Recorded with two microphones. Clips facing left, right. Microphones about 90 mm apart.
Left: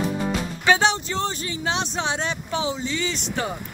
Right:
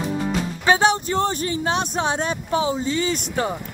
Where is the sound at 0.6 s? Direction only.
35° right (ahead or behind).